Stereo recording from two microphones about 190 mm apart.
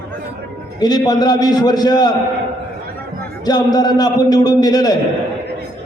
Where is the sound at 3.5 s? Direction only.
20° left (ahead or behind).